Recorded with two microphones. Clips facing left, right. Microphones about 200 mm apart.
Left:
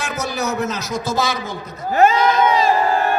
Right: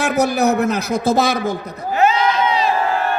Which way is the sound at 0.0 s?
60° right (ahead or behind).